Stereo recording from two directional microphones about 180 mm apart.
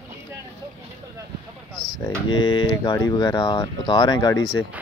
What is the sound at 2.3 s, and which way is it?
Speech, 25° left (ahead or behind).